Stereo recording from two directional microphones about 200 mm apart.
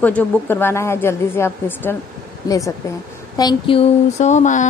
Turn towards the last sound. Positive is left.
turn(degrees=35)  # may be behind; listen again after turning